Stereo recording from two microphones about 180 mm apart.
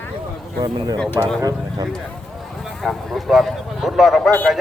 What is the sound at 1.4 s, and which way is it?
Speech, 20° right (ahead or behind).